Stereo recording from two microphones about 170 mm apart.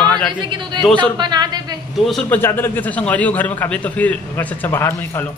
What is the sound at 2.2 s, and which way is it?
Speech, 10° left (ahead or behind).